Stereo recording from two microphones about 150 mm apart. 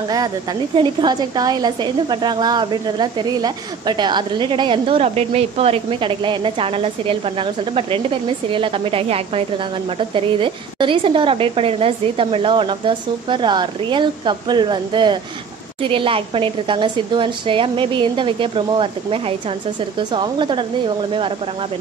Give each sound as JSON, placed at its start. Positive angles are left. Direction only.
{"t": 0.1, "sound": "a woman's voice", "side_deg": -25}